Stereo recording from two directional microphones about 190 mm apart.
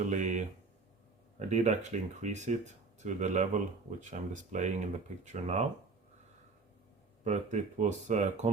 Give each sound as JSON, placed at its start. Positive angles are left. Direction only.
{"t": 0.0, "sound": "speech", "side_deg": -40}
{"t": 7.3, "sound": "speech", "side_deg": -40}